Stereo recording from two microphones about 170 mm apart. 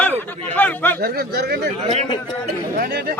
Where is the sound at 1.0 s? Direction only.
70° right (ahead or behind).